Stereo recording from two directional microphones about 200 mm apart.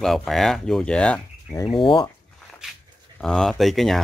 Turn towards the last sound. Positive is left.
turn(degrees=0)  # may be behind; listen again after turning